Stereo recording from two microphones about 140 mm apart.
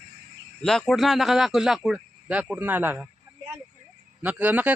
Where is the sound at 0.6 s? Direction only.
5° left (ahead or behind); by 3.0 s 15° right (ahead or behind).